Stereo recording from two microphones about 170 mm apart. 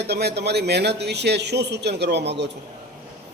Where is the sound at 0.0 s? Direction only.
75° right (ahead or behind); by 2.5 s 90° right.